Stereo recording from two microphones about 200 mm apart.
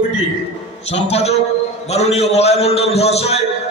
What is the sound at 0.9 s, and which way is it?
A man's voice, 30° left (ahead or behind).